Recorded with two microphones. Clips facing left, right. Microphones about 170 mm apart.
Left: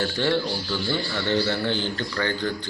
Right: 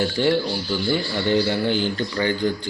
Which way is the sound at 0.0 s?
15° right (ahead or behind).